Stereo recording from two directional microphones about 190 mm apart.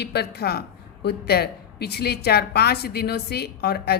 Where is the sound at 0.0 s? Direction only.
60° left (ahead or behind).